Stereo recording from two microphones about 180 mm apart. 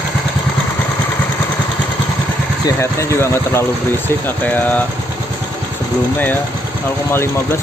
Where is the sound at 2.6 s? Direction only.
15° left (ahead or behind).